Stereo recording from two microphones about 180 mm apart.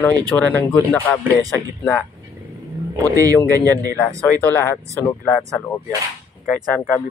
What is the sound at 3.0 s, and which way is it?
Speech, 20° right (ahead or behind).